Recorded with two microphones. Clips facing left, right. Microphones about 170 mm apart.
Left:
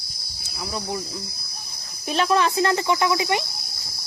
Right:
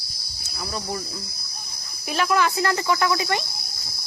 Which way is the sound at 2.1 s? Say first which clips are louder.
Left 1 dB; 25° left (ahead or behind).